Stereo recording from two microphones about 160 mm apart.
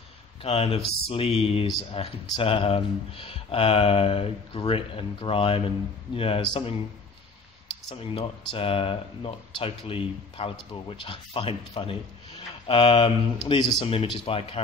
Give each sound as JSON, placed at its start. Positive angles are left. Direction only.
{"t": 0.4, "sound": "speech", "side_deg": 35}
{"t": 7.9, "sound": "speech", "side_deg": 35}